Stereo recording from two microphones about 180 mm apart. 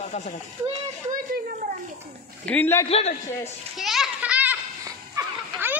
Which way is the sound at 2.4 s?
10° left (ahead or behind).